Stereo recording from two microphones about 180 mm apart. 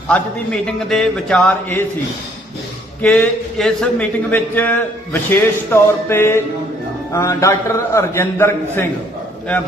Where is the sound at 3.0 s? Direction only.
5° left (ahead or behind).